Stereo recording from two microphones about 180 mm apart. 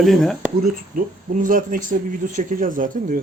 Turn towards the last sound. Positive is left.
turn(degrees=-50)  # may be behind; listen again after turning